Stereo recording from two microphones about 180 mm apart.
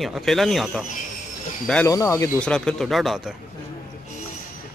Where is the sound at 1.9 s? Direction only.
15° left (ahead or behind).